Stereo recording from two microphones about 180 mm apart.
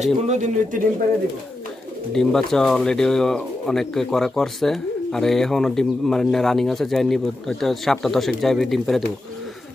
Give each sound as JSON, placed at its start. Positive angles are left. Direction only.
{"t": 0.3, "sound": "speech", "side_deg": -40}
{"t": 2.1, "sound": "speech", "side_deg": 0}